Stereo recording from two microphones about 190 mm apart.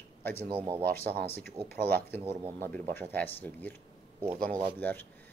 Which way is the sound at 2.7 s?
10° left (ahead or behind).